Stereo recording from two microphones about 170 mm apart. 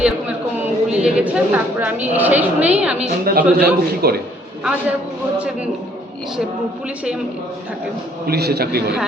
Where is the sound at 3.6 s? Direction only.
65° right (ahead or behind).